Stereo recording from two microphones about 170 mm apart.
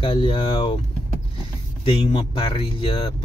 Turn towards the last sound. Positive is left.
turn(degrees=30)  # may be behind; listen again after turning